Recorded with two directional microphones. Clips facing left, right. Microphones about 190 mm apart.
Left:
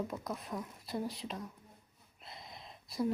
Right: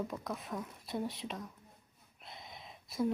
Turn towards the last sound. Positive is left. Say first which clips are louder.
# right 1 dB
turn(degrees=0)  # may be behind; listen again after turning